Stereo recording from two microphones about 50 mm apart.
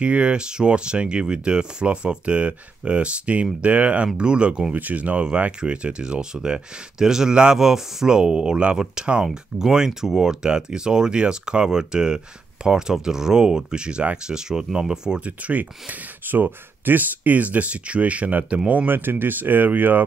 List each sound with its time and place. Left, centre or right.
0.0 s speech: right
15.1 s speech: right
18.9 s speech: right